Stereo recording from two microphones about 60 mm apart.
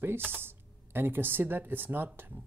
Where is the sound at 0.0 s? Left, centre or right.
Right.